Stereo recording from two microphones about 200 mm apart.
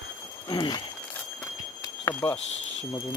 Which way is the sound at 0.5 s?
20° left (ahead or behind).